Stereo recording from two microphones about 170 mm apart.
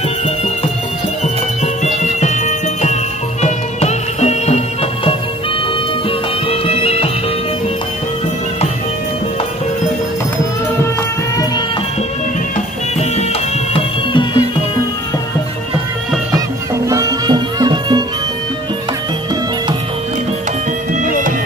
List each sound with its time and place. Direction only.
1.2 s music: 40° left (ahead or behind)
6.0 s music: 35° left (ahead or behind)
12.5 s music: 40° left (ahead or behind)
16.9 s music: 20° right (ahead or behind)